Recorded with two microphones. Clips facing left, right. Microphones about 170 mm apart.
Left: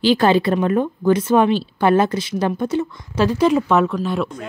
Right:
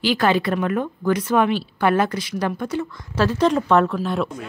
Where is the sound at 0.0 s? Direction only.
30° left (ahead or behind); by 4.3 s centre (ahead or behind).